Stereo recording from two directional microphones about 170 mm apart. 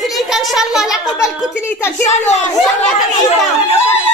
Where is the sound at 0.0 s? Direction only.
Centre (ahead or behind).